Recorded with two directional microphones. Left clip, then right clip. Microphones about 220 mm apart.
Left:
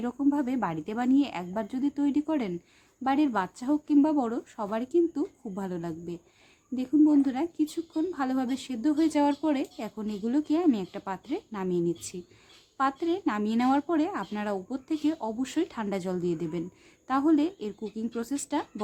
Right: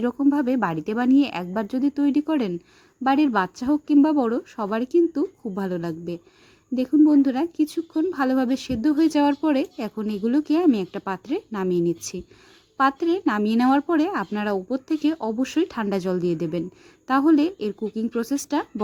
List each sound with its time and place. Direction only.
0.0 s speech: 20° right (ahead or behind)